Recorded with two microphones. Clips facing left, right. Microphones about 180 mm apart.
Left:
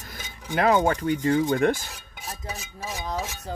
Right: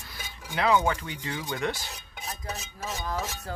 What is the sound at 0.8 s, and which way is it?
Speech, 45° left (ahead or behind).